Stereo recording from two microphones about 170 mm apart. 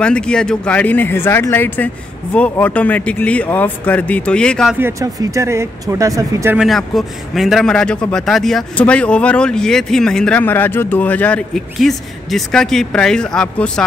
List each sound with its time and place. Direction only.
0.0 s speech: 5° left (ahead or behind)
4.7 s speech: 15° right (ahead or behind)
6.5 s a man's voice: centre (ahead or behind)